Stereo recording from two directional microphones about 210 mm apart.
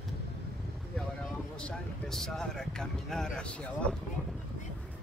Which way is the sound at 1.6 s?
5° left (ahead or behind).